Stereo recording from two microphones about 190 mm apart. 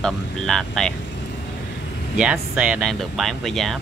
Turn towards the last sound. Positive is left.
turn(degrees=0)  # may be behind; listen again after turning